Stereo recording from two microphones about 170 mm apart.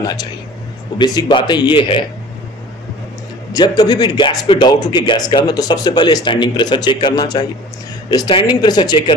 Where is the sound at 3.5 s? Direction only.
25° left (ahead or behind).